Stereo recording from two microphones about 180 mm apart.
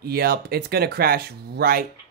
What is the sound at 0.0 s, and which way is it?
Speech, 60° right (ahead or behind).